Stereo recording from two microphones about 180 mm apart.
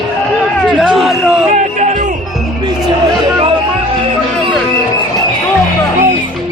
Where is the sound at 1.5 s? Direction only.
40° right (ahead or behind).